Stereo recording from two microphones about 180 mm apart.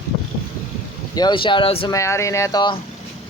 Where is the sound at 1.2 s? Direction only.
25° left (ahead or behind).